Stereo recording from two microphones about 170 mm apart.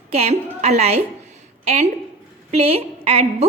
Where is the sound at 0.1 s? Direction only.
35° right (ahead or behind).